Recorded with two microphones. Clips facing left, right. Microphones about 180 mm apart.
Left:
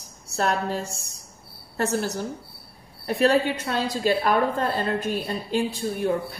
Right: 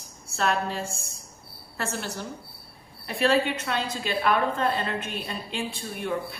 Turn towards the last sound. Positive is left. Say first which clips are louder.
# left 5 dB
turn(degrees=40)  # may be behind; listen again after turning